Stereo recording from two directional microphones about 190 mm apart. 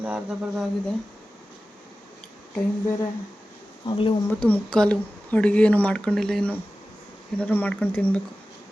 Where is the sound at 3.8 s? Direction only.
30° left (ahead or behind).